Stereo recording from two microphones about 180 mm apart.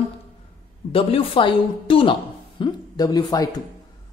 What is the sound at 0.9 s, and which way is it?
A woman's voice, 30° left (ahead or behind).